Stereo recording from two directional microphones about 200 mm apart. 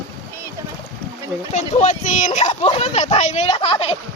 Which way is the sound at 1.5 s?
35° left (ahead or behind).